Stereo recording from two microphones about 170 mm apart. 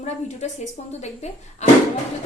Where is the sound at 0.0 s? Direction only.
40° left (ahead or behind).